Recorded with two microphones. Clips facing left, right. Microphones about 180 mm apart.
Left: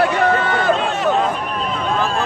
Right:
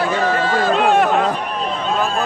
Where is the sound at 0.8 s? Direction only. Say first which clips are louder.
Right 6 dB; 60° right (ahead or behind).